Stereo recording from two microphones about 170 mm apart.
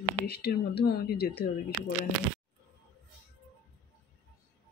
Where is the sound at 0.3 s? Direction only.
70° left (ahead or behind).